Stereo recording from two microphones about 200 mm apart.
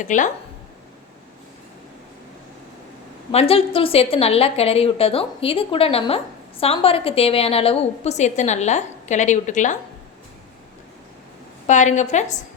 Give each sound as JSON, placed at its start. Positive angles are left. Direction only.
{"t": 0.0, "sound": "a woman's voice", "side_deg": 40}
{"t": 3.3, "sound": "a woman's voice", "side_deg": 30}
{"t": 11.6, "sound": "a woman's voice", "side_deg": 35}